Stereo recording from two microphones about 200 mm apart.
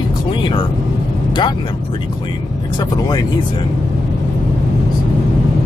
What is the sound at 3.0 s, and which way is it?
Speech, 20° left (ahead or behind).